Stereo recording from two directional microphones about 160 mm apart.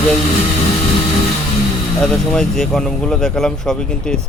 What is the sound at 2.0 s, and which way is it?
Speech, 5° left (ahead or behind).